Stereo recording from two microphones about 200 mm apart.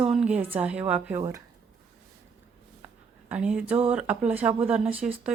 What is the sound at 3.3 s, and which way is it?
A woman's voice, 5° right (ahead or behind).